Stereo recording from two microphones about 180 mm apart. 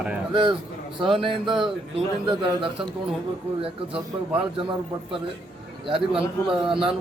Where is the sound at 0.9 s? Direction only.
30° right (ahead or behind).